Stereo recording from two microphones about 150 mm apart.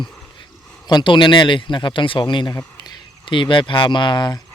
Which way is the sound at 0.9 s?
30° left (ahead or behind).